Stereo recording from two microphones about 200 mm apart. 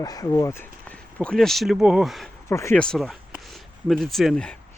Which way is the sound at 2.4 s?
15° left (ahead or behind).